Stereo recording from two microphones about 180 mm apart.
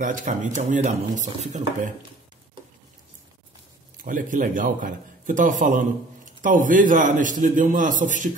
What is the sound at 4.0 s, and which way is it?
A man's voice, 45° right (ahead or behind).